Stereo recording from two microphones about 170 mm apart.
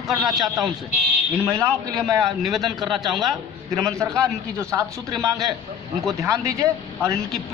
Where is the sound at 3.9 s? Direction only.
20° right (ahead or behind).